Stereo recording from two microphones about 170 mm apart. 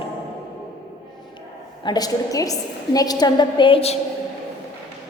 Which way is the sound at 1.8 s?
25° left (ahead or behind).